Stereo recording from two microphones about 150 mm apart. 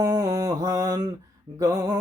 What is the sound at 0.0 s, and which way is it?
Mantra, 25° right (ahead or behind).